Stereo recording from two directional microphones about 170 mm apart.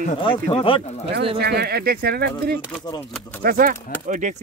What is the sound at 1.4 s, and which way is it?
Speech, 70° right (ahead or behind).